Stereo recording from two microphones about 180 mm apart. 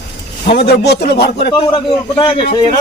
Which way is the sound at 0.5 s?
65° left (ahead or behind).